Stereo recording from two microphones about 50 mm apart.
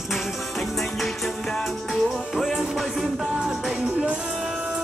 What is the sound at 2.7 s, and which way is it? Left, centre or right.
Speech, centre.